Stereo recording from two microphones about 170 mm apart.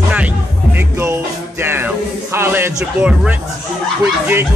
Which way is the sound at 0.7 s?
15° right (ahead or behind).